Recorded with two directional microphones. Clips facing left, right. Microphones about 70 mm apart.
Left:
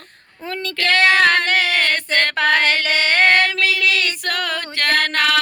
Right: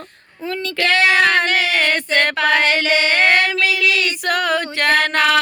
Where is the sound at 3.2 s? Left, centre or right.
Centre.